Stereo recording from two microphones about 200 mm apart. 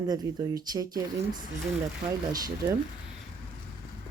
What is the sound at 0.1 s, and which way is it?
Speech, 20° right (ahead or behind).